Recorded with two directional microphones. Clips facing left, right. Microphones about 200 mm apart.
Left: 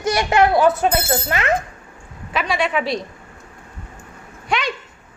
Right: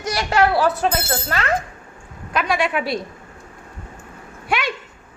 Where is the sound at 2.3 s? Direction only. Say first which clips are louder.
Even; centre (ahead or behind).